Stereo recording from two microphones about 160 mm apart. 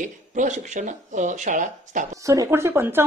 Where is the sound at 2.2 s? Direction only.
20° right (ahead or behind).